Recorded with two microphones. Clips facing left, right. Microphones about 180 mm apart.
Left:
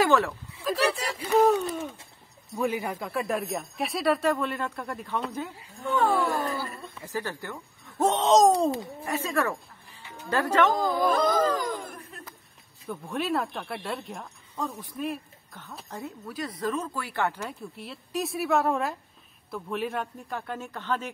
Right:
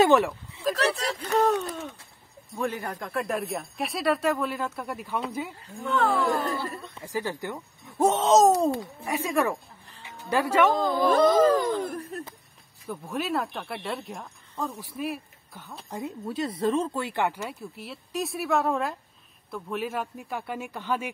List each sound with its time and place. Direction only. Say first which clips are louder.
0.0 s speech: right 3 dB; 20° right (ahead or behind)
0.7 s speech: left 3 dB; 10° left (ahead or behind); by 5.5 s 10° right (ahead or behind)
5.6 s speech: even; 10° left (ahead or behind)
7.0 s speech: right 2 dB; 15° right (ahead or behind)
10.7 s speech: right 2 dB; 25° right (ahead or behind)
12.8 s speech: even; 5° right (ahead or behind)
15.9 s speech: right 5 dB; 20° right (ahead or behind)
17.4 s speech: right 1 dB; 5° right (ahead or behind)